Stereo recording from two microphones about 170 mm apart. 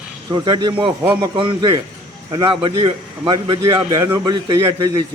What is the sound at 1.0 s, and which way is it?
Speech, 15° right (ahead or behind).